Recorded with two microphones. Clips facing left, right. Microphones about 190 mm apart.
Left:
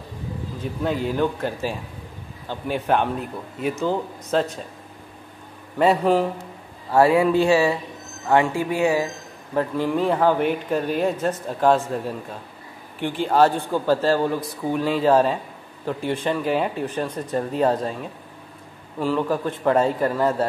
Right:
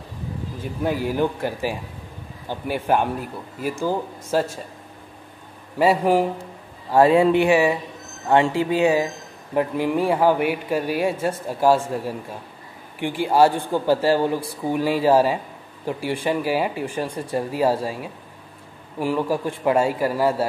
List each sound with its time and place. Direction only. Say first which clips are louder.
0.8 s speech: right 1 dB; 10° right (ahead or behind)
5.8 s speech: even; 10° right (ahead or behind)
6.9 s speech: right 1 dB; 20° right (ahead or behind)
13.0 s speech: right 1 dB; 10° right (ahead or behind)